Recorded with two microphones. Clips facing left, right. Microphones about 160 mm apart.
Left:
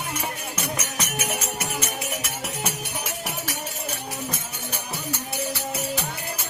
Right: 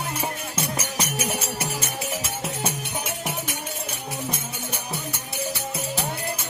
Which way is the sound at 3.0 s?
25° right (ahead or behind).